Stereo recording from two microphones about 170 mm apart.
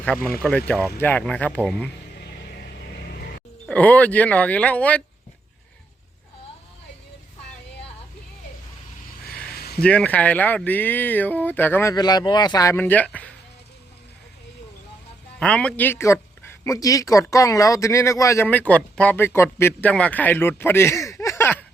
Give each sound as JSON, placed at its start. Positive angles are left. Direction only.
{"t": 0.0, "sound": "speech", "side_deg": 10}
{"t": 2.1, "sound": "a sound", "side_deg": 70}
{"t": 3.7, "sound": "speech", "side_deg": 10}
{"t": 9.6, "sound": "a sound", "side_deg": 65}
{"t": 9.8, "sound": "speech", "side_deg": 5}
{"t": 15.4, "sound": "speech", "side_deg": 5}